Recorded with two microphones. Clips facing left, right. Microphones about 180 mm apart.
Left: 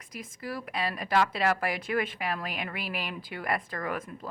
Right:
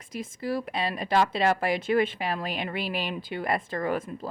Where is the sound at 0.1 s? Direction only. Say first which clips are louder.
Right 7 dB; 25° right (ahead or behind).